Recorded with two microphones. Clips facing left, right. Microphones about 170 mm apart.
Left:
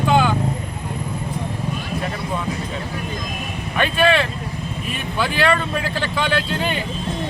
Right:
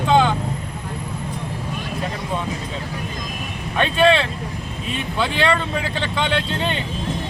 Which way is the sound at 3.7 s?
30° right (ahead or behind).